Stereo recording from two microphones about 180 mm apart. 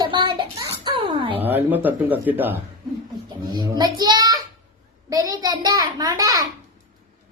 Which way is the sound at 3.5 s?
20° right (ahead or behind).